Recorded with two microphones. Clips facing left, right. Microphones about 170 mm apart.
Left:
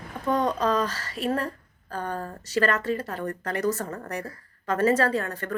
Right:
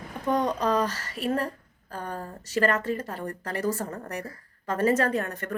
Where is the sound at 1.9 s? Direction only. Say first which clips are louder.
Left 3 dB; 60° left (ahead or behind).